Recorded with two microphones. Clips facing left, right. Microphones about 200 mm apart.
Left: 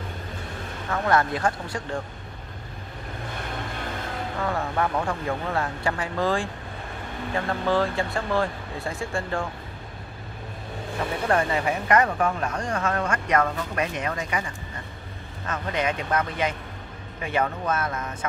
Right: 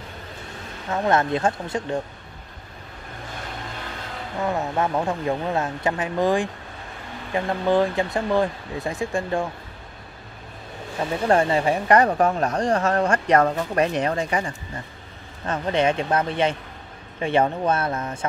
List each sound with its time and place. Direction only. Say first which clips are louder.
0.9 s speech: right 2 dB; 20° right (ahead or behind)
4.4 s speech: right 3 dB; 20° right (ahead or behind)
11.2 s speech: right 5 dB; 30° right (ahead or behind)